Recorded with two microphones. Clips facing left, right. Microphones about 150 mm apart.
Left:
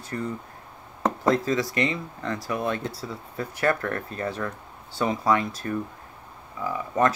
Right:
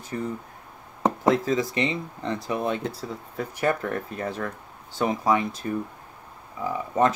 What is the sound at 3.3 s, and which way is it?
Speech, 10° right (ahead or behind).